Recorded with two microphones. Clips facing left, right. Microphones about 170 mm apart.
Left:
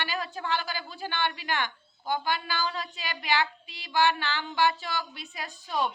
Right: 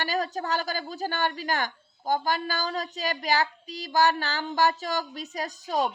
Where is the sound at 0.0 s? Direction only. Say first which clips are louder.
Right 5 dB; 40° right (ahead or behind).